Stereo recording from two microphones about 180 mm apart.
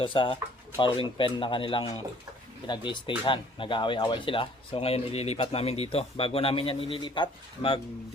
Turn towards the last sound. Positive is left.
turn(degrees=25)  # may be behind; listen again after turning